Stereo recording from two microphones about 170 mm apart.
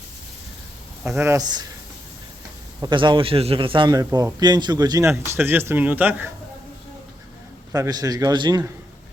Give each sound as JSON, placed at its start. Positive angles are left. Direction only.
{"t": 1.2, "sound": "a man's voice", "side_deg": -20}
{"t": 2.8, "sound": "a man's voice", "side_deg": -30}
{"t": 7.7, "sound": "a man's voice", "side_deg": -20}